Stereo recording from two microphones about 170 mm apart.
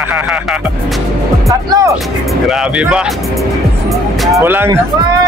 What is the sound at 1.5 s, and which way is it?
Speech, 20° right (ahead or behind).